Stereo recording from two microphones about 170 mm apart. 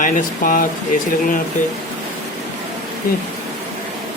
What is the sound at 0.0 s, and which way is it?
Speech, 55° left (ahead or behind).